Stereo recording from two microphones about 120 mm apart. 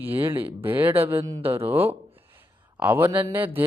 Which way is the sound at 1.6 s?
15° right (ahead or behind).